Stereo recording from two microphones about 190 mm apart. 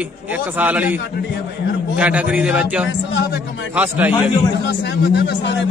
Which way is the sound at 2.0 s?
5° right (ahead or behind).